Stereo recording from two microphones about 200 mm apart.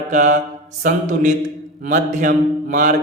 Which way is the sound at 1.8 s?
40° right (ahead or behind).